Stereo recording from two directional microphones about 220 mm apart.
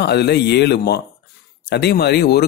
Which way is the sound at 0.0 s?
50° left (ahead or behind).